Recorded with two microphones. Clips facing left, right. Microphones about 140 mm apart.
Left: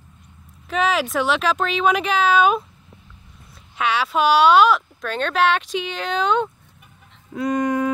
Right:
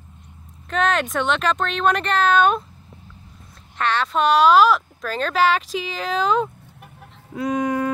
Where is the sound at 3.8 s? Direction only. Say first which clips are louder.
Left 1 dB; 5° left (ahead or behind).